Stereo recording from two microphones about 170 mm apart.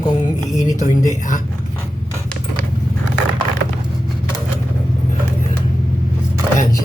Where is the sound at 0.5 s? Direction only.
20° left (ahead or behind).